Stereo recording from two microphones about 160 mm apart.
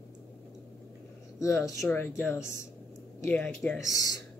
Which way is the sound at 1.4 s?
20° left (ahead or behind).